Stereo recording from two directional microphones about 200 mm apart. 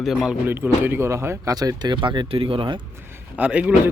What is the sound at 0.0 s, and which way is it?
Speech, centre (ahead or behind).